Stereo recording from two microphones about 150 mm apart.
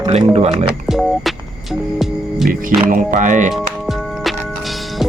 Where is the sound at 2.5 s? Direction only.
65° right (ahead or behind).